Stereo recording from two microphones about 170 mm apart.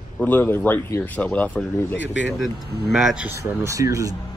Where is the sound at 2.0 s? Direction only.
90° left.